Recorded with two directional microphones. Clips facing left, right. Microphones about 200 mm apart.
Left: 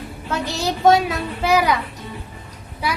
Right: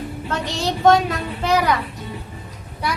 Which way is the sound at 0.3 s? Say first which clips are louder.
Left 1 dB; 5° left (ahead or behind).